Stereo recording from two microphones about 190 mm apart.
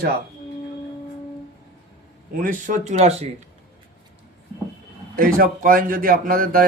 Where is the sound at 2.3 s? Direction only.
45° right (ahead or behind).